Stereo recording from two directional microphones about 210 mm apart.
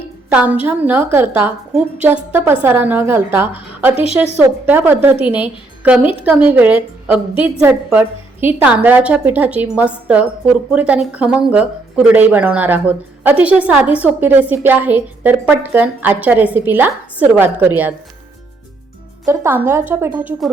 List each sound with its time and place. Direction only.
0.3 s speech: 5° right (ahead or behind)
19.2 s speech: 15° right (ahead or behind)